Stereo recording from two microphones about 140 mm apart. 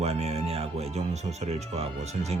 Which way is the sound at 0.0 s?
50° right (ahead or behind).